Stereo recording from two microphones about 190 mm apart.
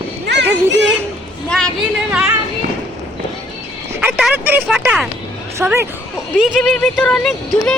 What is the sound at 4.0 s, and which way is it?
Speech, 5° right (ahead or behind).